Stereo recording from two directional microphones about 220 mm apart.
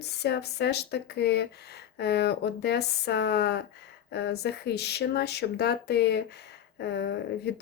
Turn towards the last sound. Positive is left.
turn(degrees=50)  # may be behind; listen again after turning